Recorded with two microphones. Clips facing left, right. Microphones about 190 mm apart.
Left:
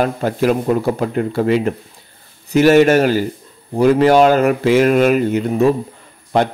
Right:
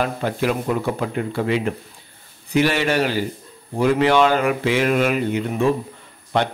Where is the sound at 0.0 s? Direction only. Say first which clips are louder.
Left 5 dB; 45° left (ahead or behind).